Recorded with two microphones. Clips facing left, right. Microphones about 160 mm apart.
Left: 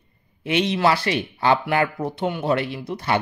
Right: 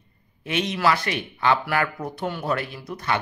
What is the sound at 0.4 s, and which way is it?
Speech, 30° left (ahead or behind).